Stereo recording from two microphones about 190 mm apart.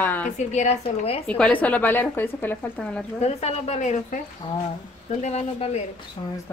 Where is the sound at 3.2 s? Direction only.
35° left (ahead or behind).